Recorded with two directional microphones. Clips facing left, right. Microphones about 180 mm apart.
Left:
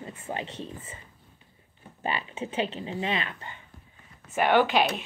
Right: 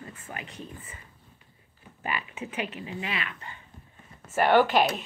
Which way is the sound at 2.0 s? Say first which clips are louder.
Left 2 dB; 30° left (ahead or behind).